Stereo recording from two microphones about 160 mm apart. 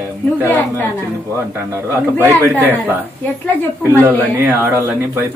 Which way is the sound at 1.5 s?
15° right (ahead or behind).